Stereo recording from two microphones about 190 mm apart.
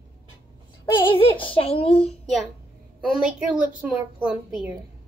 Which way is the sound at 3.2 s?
5° right (ahead or behind).